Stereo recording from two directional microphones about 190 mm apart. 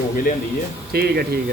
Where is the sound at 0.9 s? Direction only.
55° right (ahead or behind).